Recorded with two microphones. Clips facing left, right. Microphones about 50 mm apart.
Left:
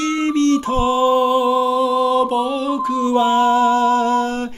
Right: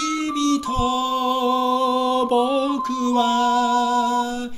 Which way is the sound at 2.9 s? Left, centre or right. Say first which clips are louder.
Left 5 dB; left.